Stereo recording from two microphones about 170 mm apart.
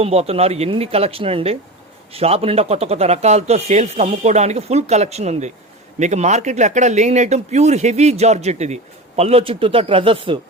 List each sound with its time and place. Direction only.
0.0 s speech: 35° right (ahead or behind)